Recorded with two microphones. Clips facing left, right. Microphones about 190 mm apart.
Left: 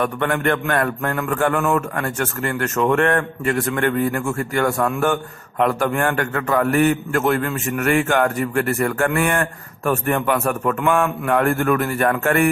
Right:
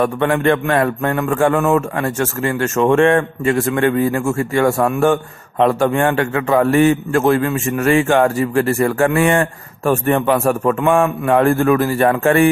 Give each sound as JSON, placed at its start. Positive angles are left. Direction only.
{"t": 0.0, "sound": "speech", "side_deg": -25}